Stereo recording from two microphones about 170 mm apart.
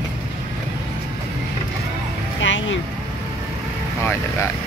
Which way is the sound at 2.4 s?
90° left.